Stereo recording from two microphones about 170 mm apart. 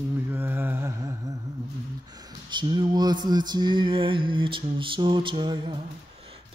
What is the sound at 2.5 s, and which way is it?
Mantra, 25° right (ahead or behind).